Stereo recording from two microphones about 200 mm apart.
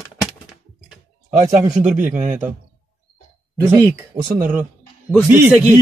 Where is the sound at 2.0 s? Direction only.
40° right (ahead or behind).